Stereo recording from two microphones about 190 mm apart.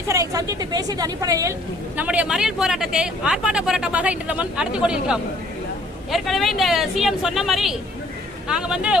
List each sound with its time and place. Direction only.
0.1 s speech: 15° right (ahead or behind)
2.0 s a woman's voice: 5° right (ahead or behind)